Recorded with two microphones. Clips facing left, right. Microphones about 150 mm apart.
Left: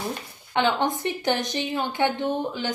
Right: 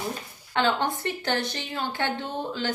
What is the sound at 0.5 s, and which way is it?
A woman's voice, 15° left (ahead or behind).